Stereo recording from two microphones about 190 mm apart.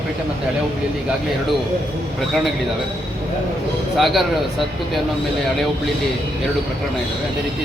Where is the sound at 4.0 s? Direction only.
Centre (ahead or behind).